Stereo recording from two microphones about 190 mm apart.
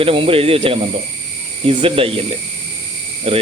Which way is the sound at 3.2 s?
30° right (ahead or behind).